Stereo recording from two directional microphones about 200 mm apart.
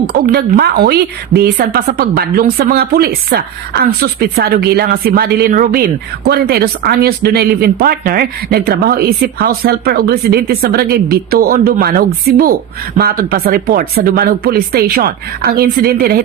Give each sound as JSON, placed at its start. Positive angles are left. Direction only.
{"t": 0.1, "sound": "a woman's voice", "side_deg": -50}